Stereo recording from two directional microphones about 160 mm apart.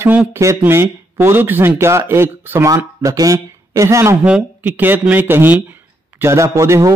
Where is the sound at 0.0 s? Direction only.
10° right (ahead or behind).